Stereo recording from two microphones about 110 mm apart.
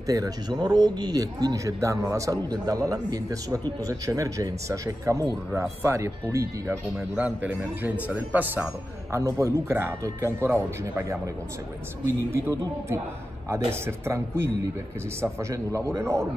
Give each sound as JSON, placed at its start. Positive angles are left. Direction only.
{"t": 0.0, "sound": "a man's voice", "side_deg": -35}
{"t": 7.2, "sound": "a man's voice", "side_deg": -10}
{"t": 9.1, "sound": "speech", "side_deg": -25}
{"t": 12.2, "sound": "speech", "side_deg": -30}